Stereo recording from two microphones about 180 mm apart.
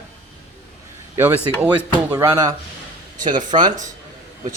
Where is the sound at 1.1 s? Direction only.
15° right (ahead or behind).